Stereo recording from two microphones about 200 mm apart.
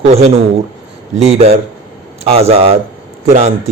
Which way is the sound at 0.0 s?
30° right (ahead or behind).